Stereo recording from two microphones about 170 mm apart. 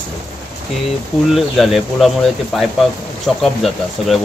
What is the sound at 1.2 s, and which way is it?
Speech, centre (ahead or behind).